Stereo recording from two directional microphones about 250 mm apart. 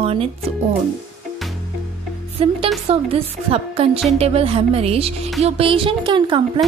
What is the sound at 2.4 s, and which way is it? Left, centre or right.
A woman's voice, right.